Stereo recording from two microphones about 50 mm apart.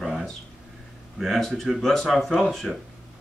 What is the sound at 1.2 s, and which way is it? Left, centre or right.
Speech, centre.